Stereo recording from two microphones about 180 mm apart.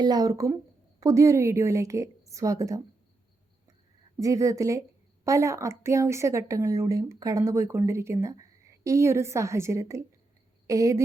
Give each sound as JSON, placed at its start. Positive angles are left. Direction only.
{"t": 0.0, "sound": "speech", "side_deg": -20}
{"t": 4.2, "sound": "speech", "side_deg": -20}